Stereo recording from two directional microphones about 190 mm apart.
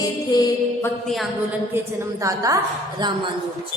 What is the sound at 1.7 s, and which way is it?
A woman's voice, 15° right (ahead or behind).